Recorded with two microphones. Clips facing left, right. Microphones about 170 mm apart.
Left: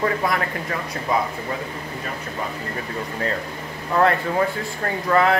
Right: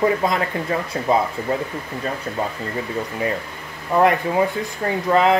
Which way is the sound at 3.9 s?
15° right (ahead or behind).